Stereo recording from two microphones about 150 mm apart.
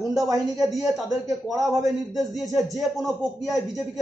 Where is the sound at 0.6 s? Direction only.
Centre (ahead or behind).